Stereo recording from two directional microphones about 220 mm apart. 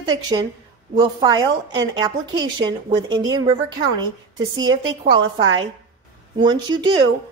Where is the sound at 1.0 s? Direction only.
20° right (ahead or behind).